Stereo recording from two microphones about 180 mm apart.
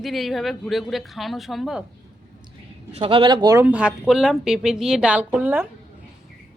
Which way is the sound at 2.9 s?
30° right (ahead or behind).